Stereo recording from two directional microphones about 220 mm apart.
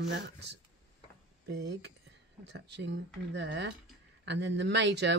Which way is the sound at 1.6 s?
50° right (ahead or behind).